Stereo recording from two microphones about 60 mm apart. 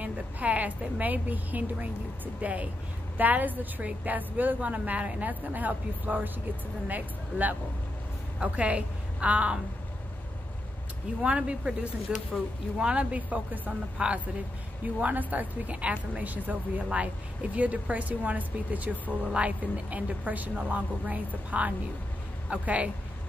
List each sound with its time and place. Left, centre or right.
0.0 s a woman's voice: right
11.2 s a woman's voice: centre